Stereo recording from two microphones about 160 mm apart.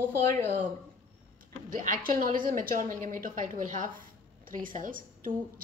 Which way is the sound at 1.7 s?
60° right (ahead or behind).